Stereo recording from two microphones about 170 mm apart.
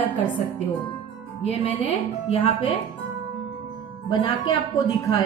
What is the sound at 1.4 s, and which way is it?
A woman's voice, 40° left (ahead or behind).